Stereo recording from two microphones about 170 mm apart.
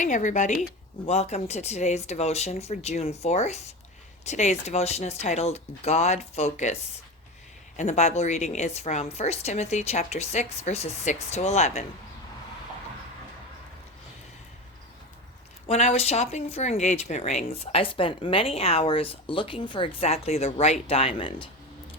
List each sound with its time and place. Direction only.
0.0 s speech: 50° left (ahead or behind)
7.8 s speech: 45° left (ahead or behind)
15.6 s speech: 40° left (ahead or behind)